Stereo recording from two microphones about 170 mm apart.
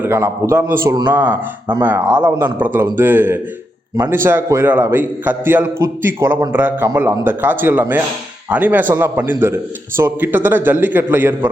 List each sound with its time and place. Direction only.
0.0 s a man's voice: 15° right (ahead or behind)
1.1 s a man's voice: 10° right (ahead or behind)